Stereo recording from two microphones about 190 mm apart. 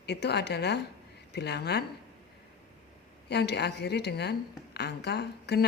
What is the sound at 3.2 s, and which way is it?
A woman's voice, 60° left (ahead or behind).